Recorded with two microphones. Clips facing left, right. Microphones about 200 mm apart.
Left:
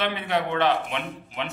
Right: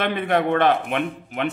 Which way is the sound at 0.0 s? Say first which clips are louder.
Right 5 dB; 50° right (ahead or behind).